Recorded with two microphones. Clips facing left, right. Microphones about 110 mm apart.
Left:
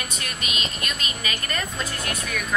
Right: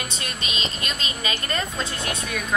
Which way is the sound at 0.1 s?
30° right (ahead or behind).